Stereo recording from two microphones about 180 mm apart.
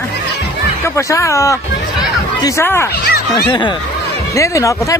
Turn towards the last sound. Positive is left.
turn(degrees=15)  # may be behind; listen again after turning